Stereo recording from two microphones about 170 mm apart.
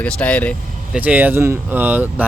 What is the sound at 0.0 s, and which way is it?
Speech, 10° left (ahead or behind).